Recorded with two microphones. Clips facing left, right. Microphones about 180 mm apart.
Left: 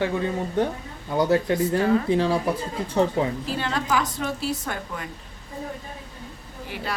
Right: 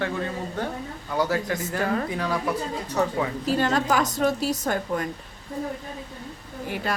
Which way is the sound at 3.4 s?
45° right (ahead or behind).